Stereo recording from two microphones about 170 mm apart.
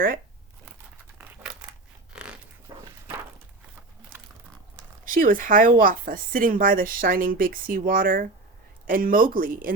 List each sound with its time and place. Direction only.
2.1 s a sound: 5° right (ahead or behind)
2.7 s walk: 25° right (ahead or behind)
5.0 s speech: 55° right (ahead or behind)